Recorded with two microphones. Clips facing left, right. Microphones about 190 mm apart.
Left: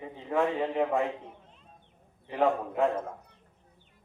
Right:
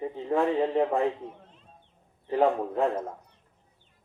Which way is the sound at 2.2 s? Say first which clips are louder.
Right 3 dB; 35° right (ahead or behind).